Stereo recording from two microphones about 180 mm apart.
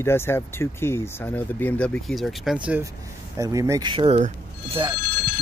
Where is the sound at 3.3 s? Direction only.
20° right (ahead or behind).